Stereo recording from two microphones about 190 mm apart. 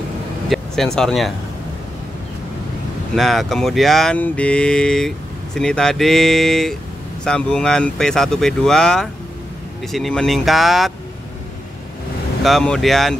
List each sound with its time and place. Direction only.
0.5 s speech: centre (ahead or behind)
3.2 s speech: centre (ahead or behind)
12.4 s speech: centre (ahead or behind)